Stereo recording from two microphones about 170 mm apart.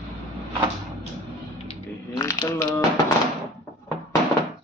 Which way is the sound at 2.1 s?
20° left (ahead or behind).